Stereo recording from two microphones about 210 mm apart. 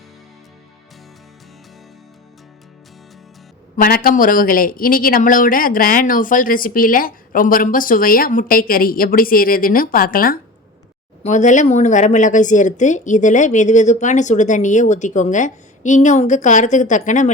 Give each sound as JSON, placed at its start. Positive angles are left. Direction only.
{"t": 3.8, "sound": "speech", "side_deg": 45}